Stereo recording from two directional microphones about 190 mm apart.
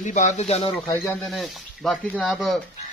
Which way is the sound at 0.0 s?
40° left (ahead or behind).